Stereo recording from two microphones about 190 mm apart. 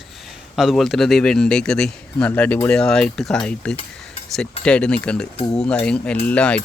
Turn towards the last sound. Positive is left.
turn(degrees=5)  # may be behind; listen again after turning